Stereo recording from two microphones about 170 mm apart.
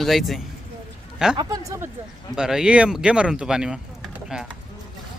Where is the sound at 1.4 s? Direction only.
20° right (ahead or behind).